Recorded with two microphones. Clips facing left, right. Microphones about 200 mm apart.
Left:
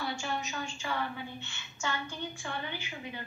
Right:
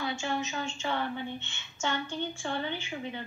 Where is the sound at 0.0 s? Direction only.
20° right (ahead or behind).